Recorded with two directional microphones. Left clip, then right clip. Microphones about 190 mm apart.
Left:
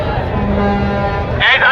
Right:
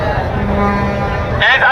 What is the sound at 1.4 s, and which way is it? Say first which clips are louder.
Music: even; 30° left (ahead or behind).